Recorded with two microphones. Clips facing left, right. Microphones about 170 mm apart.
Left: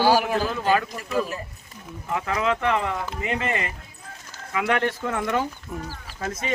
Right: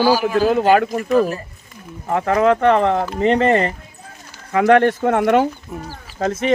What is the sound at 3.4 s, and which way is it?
Speech, 40° right (ahead or behind).